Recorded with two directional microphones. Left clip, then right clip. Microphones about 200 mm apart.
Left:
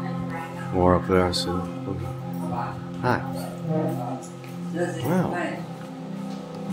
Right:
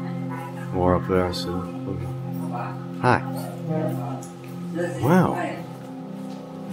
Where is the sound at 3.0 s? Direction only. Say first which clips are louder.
Right 4 dB; 40° right (ahead or behind).